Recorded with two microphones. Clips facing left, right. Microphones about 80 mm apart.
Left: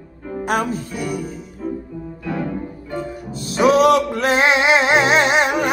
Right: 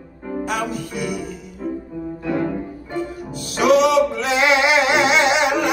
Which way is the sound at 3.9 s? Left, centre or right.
Left.